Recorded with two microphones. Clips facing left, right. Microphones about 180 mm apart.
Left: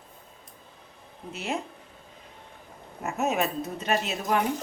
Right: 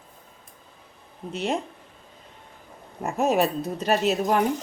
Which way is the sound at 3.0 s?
35° right (ahead or behind).